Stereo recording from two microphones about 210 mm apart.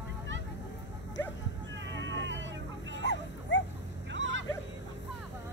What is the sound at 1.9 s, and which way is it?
Vehicle, 60° right (ahead or behind).